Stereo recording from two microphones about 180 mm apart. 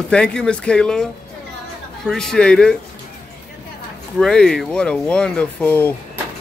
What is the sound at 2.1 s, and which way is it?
Speech, 5° left (ahead or behind).